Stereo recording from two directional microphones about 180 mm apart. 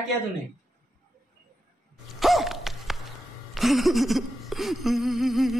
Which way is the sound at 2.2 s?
Centre (ahead or behind).